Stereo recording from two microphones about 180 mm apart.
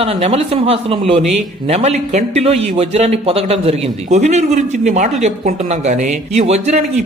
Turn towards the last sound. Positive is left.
turn(degrees=-35)  # may be behind; listen again after turning